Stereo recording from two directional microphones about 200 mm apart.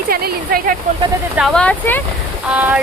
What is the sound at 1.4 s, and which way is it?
Speech, centre (ahead or behind).